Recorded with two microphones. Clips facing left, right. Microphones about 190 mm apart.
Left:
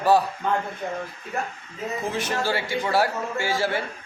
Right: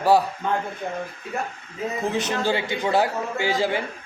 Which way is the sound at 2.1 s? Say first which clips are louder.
Right 2 dB; 20° right (ahead or behind).